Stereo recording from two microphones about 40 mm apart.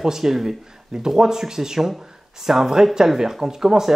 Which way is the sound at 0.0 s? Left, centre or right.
Centre.